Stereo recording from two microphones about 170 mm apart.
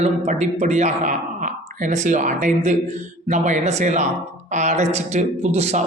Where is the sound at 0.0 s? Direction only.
40° right (ahead or behind).